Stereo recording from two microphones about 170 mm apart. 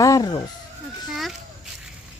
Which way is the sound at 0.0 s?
20° left (ahead or behind).